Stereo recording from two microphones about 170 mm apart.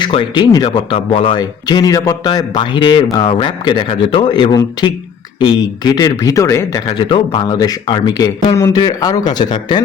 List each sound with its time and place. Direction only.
0.0 s speech: 25° left (ahead or behind)